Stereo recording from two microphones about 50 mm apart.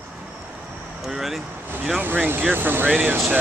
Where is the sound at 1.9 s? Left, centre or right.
Right.